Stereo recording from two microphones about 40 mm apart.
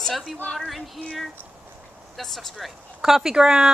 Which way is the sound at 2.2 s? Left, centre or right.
Centre.